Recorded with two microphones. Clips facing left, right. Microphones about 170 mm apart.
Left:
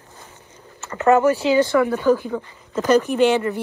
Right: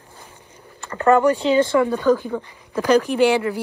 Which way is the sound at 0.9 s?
20° left (ahead or behind).